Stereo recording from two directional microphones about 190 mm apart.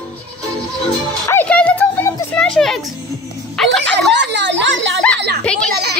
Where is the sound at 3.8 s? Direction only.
65° right (ahead or behind).